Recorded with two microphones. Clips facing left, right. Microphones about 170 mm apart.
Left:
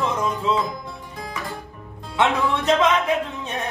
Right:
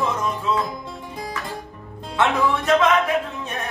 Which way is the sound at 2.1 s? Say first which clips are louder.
Right 1 dB; 20° left (ahead or behind).